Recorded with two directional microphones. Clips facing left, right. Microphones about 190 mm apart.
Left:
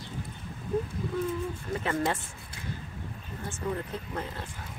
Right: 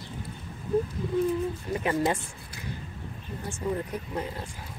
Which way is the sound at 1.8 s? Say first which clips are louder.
Right 3 dB; 15° right (ahead or behind).